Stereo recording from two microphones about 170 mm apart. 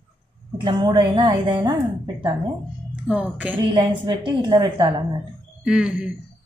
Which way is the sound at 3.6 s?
30° right (ahead or behind).